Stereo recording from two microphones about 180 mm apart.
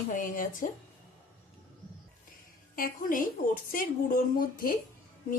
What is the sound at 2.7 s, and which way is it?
Speech, 50° left (ahead or behind).